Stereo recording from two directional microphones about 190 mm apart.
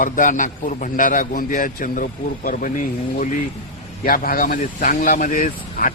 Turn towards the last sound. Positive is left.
turn(degrees=45)  # may be behind; listen again after turning